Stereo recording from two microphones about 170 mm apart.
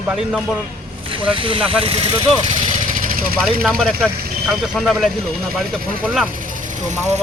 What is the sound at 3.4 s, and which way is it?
Speech, centre (ahead or behind).